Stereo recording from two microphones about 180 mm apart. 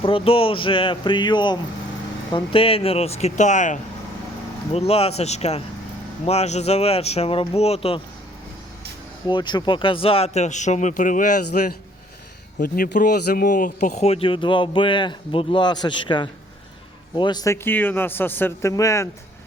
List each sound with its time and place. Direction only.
0.0 s a man's voice: 30° left (ahead or behind)
9.2 s speech: 25° left (ahead or behind); by 11.3 s 45° left (ahead or behind)
12.5 s a man's voice: 50° left (ahead or behind); by 19.0 s 15° left (ahead or behind)